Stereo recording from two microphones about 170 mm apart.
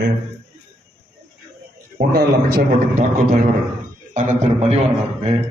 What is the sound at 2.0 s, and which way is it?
A man's voice, 60° right (ahead or behind).